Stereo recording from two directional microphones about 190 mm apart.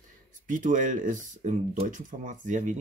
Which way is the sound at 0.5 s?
45° right (ahead or behind).